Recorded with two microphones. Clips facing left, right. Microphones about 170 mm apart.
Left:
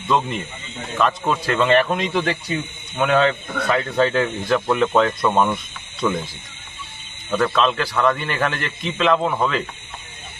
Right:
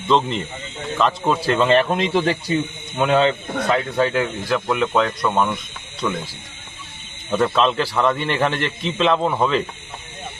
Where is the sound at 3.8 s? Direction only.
10° right (ahead or behind).